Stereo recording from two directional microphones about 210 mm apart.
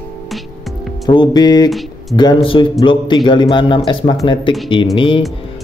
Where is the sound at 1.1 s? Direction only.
20° left (ahead or behind).